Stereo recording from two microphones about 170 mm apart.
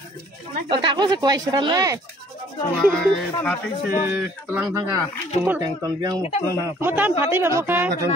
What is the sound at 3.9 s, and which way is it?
Speech, 10° right (ahead or behind).